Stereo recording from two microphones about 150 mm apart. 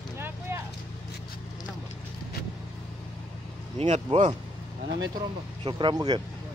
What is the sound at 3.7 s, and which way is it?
Speech, 45° right (ahead or behind).